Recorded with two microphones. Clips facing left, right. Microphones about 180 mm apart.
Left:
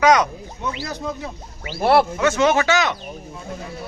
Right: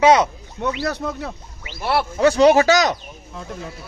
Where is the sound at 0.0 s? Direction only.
30° right (ahead or behind).